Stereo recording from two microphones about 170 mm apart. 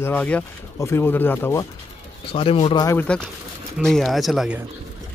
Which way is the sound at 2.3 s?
30° left (ahead or behind).